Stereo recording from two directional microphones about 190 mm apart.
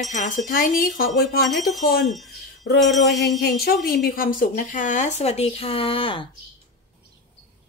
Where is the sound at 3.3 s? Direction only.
60° left (ahead or behind).